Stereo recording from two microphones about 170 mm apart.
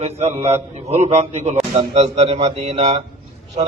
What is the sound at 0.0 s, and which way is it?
A man's voice, 40° right (ahead or behind).